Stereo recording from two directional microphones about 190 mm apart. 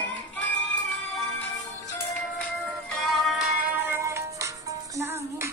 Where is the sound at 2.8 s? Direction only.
Centre (ahead or behind).